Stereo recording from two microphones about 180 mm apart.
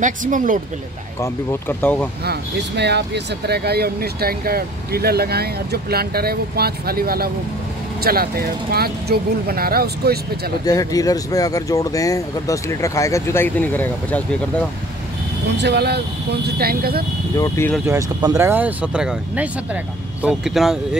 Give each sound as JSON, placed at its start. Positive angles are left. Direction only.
{"t": 0.0, "sound": "speech", "side_deg": -45}
{"t": 1.2, "sound": "speech", "side_deg": 10}
{"t": 2.2, "sound": "speech", "side_deg": -70}
{"t": 10.6, "sound": "speech", "side_deg": 20}
{"t": 15.5, "sound": "speech", "side_deg": -70}
{"t": 17.4, "sound": "speech", "side_deg": 15}
{"t": 17.8, "sound": "speech", "side_deg": -15}